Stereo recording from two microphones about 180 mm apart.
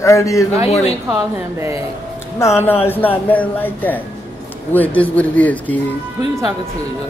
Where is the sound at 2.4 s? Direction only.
15° left (ahead or behind).